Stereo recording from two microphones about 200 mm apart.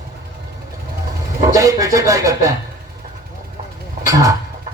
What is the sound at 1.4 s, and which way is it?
Speech, 15° right (ahead or behind).